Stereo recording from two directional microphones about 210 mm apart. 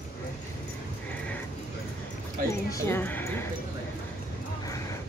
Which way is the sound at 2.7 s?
10° left (ahead or behind).